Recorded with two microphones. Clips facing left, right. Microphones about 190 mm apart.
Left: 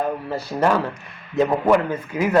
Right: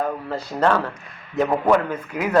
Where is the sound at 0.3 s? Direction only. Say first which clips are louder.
Even; 10° left (ahead or behind).